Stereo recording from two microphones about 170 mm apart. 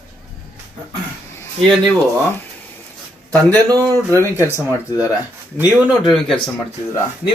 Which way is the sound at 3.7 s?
20° right (ahead or behind).